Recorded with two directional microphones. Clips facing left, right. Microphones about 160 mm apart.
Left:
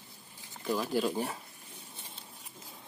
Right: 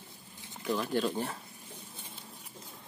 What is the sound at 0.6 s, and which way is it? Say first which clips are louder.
Speech: even; 5° left (ahead or behind).